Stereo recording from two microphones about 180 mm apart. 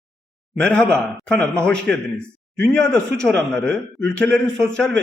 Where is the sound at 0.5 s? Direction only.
5° left (ahead or behind).